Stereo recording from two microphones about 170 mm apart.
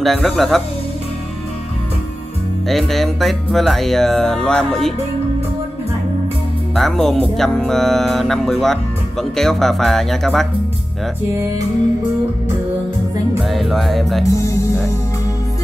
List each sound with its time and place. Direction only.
0.0 s speech: centre (ahead or behind)
2.7 s speech: centre (ahead or behind)
6.7 s speech: centre (ahead or behind)
13.4 s speech: centre (ahead or behind)
14.3 s music: 15° left (ahead or behind)